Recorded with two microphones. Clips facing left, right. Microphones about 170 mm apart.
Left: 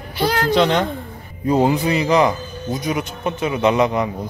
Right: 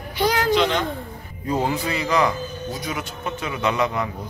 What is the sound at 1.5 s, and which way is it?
A man's voice, 20° left (ahead or behind).